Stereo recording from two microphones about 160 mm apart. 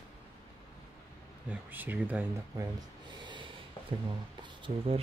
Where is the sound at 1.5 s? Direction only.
10° right (ahead or behind).